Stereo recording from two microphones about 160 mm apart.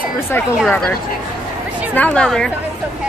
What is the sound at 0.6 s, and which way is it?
Speech, 5° left (ahead or behind).